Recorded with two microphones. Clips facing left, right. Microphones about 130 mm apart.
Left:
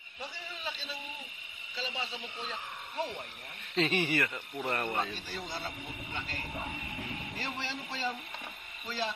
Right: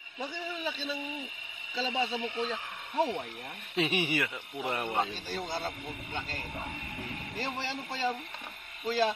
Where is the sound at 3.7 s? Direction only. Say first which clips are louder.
Even; 15° right (ahead or behind).